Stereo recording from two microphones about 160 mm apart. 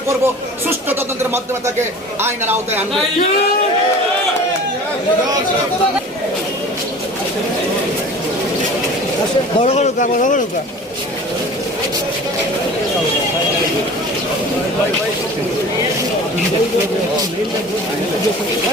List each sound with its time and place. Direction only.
2.2 s a man's voice: 15° right (ahead or behind)
9.6 s speech: 45° left (ahead or behind)